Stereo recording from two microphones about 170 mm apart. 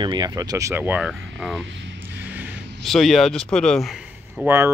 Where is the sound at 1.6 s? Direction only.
90° right.